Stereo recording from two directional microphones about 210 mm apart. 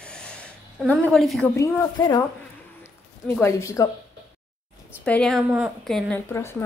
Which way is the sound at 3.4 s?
10° left (ahead or behind).